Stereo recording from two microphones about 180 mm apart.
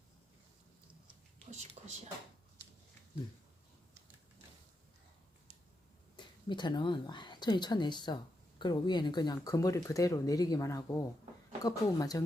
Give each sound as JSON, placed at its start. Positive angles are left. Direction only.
{"t": 1.5, "sound": "speech", "side_deg": -40}
{"t": 6.1, "sound": "a woman's voice", "side_deg": 25}